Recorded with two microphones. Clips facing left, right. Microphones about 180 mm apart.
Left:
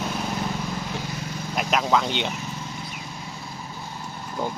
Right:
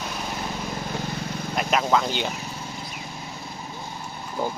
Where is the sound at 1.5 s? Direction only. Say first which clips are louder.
Even; centre (ahead or behind).